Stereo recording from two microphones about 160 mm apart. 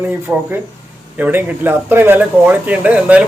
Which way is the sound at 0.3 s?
15° right (ahead or behind).